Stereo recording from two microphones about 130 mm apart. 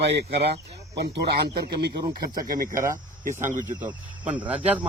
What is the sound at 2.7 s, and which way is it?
Speech, 20° right (ahead or behind).